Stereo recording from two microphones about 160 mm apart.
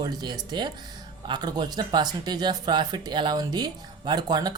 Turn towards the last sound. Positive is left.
turn(degrees=-25)  # may be behind; listen again after turning